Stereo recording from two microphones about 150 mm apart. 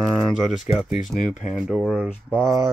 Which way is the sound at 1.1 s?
55° left (ahead or behind).